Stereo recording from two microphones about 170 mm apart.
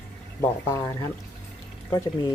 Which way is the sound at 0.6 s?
15° left (ahead or behind).